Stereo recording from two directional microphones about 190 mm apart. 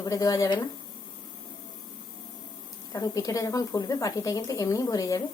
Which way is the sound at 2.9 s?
20° left (ahead or behind).